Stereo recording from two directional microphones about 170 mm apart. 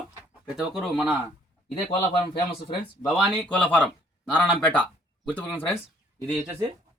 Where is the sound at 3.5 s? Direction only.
10° left (ahead or behind).